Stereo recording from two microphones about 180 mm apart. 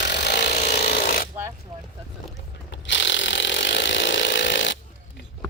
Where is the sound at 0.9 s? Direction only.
55° left (ahead or behind).